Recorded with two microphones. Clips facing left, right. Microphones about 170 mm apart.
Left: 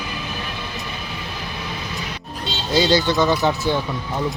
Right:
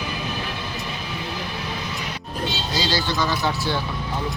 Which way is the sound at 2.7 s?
20° left (ahead or behind).